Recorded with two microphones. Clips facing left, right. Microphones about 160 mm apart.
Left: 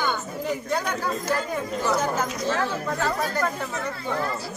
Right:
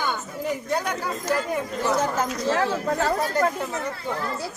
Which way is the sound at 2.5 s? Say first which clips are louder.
Right 5 dB; 40° right (ahead or behind).